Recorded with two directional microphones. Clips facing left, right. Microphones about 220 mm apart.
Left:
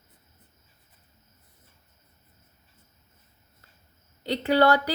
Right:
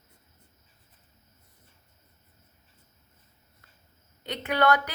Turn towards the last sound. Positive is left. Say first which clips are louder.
# left 4 dB
turn(degrees=30)  # may be behind; listen again after turning